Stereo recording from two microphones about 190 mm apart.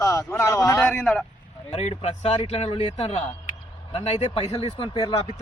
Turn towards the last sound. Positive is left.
turn(degrees=25)  # may be behind; listen again after turning